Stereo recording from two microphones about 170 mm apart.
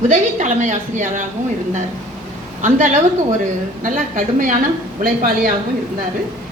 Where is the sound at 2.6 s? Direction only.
45° right (ahead or behind).